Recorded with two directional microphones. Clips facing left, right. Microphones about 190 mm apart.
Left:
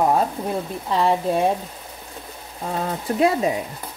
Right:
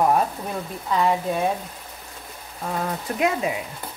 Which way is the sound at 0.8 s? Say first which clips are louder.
Left 1 dB; 30° left (ahead or behind).